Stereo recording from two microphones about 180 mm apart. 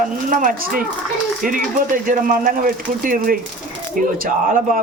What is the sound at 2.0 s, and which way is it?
Speech, 50° right (ahead or behind).